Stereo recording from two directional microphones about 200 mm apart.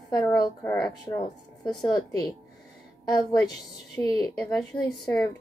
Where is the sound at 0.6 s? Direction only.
10° left (ahead or behind).